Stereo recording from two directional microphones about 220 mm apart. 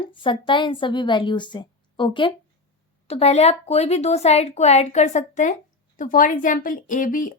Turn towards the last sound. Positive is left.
turn(degrees=35)  # may be behind; listen again after turning